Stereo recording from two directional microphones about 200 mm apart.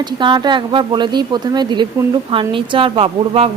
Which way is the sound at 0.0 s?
20° right (ahead or behind).